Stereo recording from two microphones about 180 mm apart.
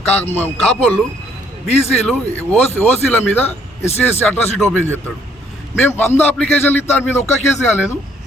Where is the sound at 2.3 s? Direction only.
10° left (ahead or behind).